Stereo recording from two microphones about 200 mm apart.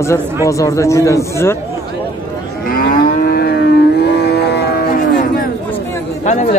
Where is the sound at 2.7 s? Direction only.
45° left (ahead or behind).